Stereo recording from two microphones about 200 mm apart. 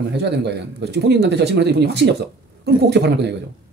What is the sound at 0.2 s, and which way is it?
Speech, 55° right (ahead or behind).